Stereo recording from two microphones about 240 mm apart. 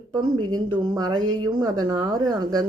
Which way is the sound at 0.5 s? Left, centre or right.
Centre.